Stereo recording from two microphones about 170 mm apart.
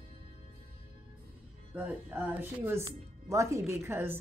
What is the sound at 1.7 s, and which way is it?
Speech, 10° right (ahead or behind).